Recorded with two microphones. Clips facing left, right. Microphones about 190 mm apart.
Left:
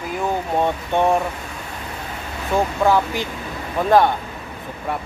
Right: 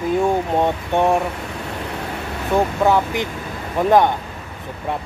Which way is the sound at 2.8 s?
15° right (ahead or behind).